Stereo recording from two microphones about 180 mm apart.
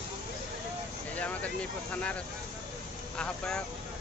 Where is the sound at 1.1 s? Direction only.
10° left (ahead or behind).